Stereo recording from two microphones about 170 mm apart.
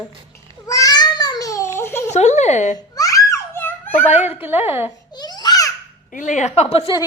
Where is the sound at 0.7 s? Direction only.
20° left (ahead or behind).